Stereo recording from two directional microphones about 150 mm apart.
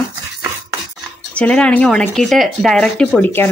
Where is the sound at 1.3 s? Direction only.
5° left (ahead or behind).